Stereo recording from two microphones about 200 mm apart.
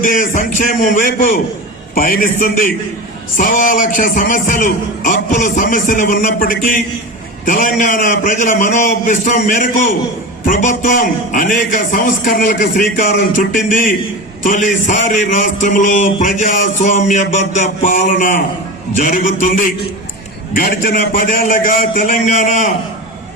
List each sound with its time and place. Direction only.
0.0 s a man's voice: 40° left (ahead or behind)